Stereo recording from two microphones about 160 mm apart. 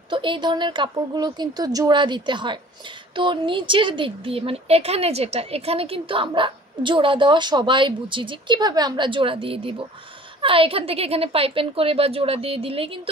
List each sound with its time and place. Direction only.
0.1 s speech: 30° right (ahead or behind)